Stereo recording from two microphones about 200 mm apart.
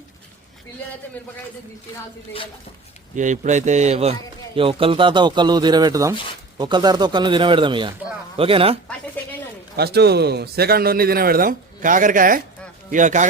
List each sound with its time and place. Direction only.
3.2 s a man's voice: 40° right (ahead or behind)
9.7 s a man's voice: 55° right (ahead or behind); by 13.2 s 40° right (ahead or behind)